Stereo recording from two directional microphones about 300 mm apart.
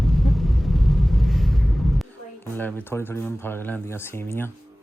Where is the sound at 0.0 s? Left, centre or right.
Centre.